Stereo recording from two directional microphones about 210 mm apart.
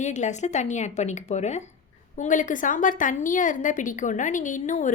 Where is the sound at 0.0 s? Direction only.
35° left (ahead or behind).